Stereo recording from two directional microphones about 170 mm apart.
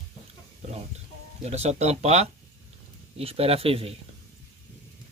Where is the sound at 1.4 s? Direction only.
40° right (ahead or behind).